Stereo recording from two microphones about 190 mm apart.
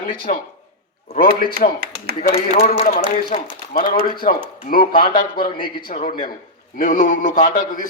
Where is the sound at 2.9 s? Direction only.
45° left (ahead or behind).